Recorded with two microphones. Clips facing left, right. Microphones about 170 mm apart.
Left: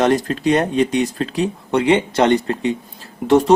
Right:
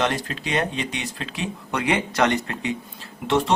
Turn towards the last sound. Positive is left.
turn(degrees=40)  # may be behind; listen again after turning